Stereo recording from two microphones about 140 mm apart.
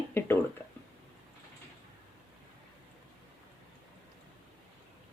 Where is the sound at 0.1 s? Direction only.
15° left (ahead or behind).